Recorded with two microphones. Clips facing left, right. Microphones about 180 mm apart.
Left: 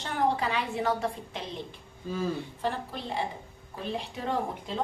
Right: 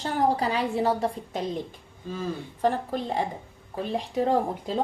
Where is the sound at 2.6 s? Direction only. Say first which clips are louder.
Right 10 dB; 45° right (ahead or behind).